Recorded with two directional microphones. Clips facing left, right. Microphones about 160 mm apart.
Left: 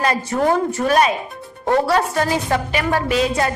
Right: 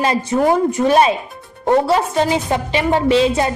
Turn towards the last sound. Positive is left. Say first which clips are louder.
# right 4 dB
turn(degrees=-25)  # may be behind; listen again after turning